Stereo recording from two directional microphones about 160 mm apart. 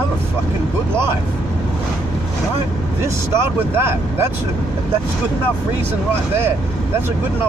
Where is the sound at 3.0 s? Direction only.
15° right (ahead or behind).